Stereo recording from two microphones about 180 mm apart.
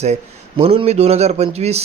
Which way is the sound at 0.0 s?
40° right (ahead or behind).